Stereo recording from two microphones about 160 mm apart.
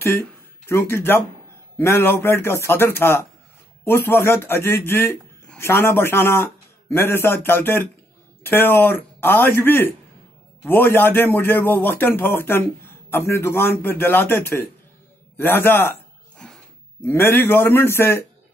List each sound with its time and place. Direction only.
0.7 s a man's voice: 15° left (ahead or behind)
16.4 s a sound: 5° left (ahead or behind)
17.0 s a man's voice: 15° left (ahead or behind)